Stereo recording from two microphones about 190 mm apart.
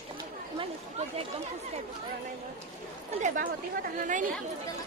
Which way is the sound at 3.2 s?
45° right (ahead or behind).